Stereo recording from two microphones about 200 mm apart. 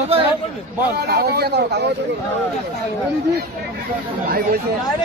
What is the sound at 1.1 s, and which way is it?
Speech, 50° right (ahead or behind).